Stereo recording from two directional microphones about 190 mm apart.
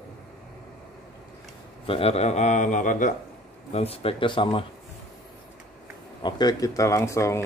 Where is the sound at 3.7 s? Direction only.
30° left (ahead or behind).